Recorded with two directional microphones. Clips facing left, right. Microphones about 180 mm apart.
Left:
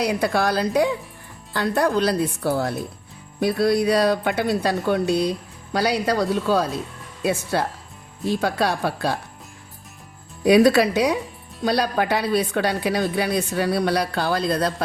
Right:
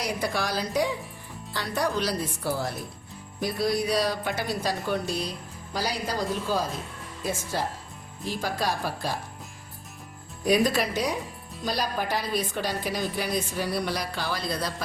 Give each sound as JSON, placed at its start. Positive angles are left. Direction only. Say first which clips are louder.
{"t": 0.0, "sound": "speech", "louder": "left 8 dB", "side_deg": 65}
{"t": 8.4, "sound": "speech", "louder": "left 5 dB", "side_deg": 65}
{"t": 10.4, "sound": "speech", "louder": "left 8 dB", "side_deg": 70}